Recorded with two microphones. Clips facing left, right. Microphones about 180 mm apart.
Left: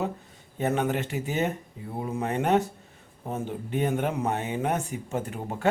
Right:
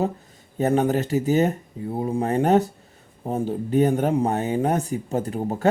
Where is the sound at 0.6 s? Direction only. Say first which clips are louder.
Right 6 dB; 35° right (ahead or behind).